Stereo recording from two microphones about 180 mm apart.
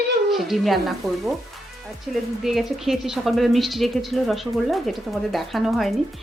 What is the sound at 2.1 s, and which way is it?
Speech, centre (ahead or behind).